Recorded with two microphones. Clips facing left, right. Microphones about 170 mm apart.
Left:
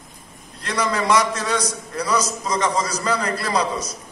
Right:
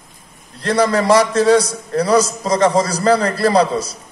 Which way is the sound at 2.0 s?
30° right (ahead or behind).